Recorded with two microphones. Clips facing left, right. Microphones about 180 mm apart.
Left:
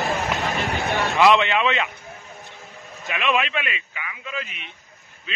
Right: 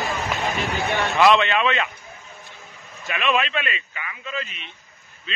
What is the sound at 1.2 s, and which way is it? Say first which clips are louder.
Speech: even; 15° left (ahead or behind).